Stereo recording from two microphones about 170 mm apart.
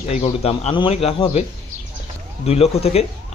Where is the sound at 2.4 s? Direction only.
35° left (ahead or behind).